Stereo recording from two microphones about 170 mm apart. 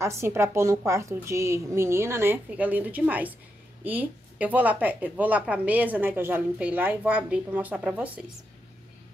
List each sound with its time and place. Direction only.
0.0 s a woman's voice: 15° right (ahead or behind)